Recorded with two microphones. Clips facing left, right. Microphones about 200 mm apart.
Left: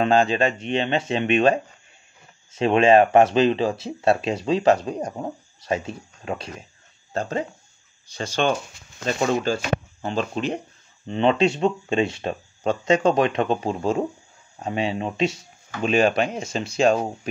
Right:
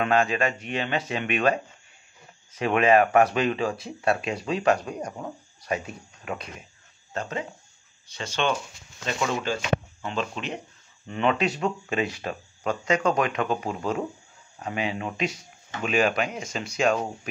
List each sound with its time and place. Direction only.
0.0 s speech: 30° left (ahead or behind)